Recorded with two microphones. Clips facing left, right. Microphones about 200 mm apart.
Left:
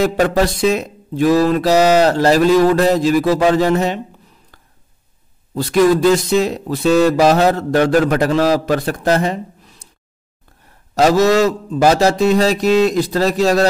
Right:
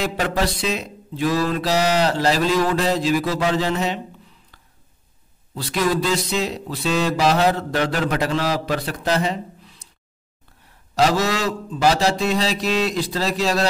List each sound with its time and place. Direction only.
0.0 s speech: 50° left (ahead or behind)
4.5 s a sound: 45° left (ahead or behind)
5.5 s speech: 45° left (ahead or behind)
11.0 s speech: 45° left (ahead or behind)